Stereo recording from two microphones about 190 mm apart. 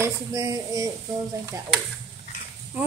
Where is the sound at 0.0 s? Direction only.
15° right (ahead or behind).